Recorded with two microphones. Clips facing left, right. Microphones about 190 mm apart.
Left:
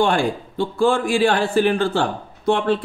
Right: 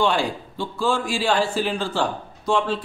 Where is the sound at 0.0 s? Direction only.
50° left (ahead or behind).